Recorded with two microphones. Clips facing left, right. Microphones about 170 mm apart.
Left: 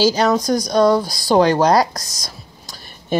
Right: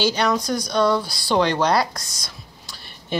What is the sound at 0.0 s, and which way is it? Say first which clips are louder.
Speech: left 5 dB; 40° left (ahead or behind).